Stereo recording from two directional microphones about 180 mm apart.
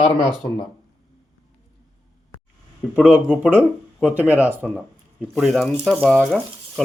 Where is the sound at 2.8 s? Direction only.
5° right (ahead or behind).